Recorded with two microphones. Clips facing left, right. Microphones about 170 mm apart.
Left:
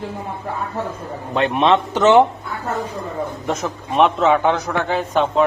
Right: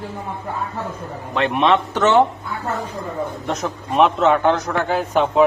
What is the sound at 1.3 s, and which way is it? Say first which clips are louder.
Speech: left 1 dB; 25° left (ahead or behind).